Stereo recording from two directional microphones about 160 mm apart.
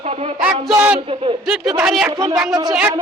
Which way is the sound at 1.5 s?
5° right (ahead or behind).